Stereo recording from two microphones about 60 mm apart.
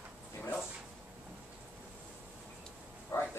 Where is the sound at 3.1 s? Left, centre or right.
Left.